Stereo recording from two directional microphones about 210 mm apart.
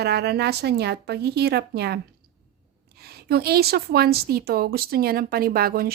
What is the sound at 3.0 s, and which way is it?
A woman's voice, 50° right (ahead or behind).